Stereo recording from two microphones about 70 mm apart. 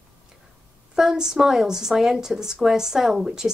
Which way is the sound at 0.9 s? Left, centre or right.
Centre.